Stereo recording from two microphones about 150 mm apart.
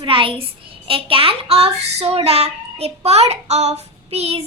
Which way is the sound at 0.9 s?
35° right (ahead or behind).